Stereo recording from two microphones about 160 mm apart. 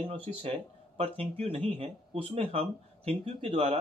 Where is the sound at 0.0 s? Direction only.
35° right (ahead or behind).